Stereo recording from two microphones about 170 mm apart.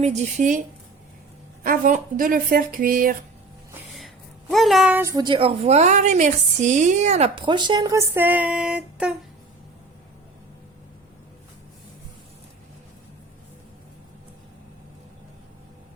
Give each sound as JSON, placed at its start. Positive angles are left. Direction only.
{"t": 0.0, "sound": "speech", "side_deg": -40}
{"t": 1.6, "sound": "speech", "side_deg": -55}
{"t": 4.5, "sound": "speech", "side_deg": 0}
{"t": 5.1, "sound": "a woman's voice", "side_deg": -30}
{"t": 7.3, "sound": "speech", "side_deg": -25}